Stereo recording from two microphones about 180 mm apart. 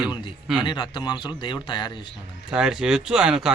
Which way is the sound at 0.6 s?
25° left (ahead or behind).